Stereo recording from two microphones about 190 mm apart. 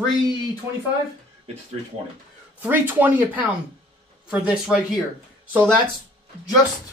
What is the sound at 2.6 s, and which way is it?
Speech, 10° right (ahead or behind).